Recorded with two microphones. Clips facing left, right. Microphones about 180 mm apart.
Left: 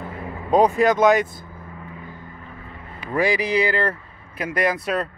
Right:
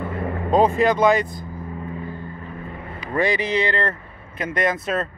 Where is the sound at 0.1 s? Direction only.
60° right (ahead or behind).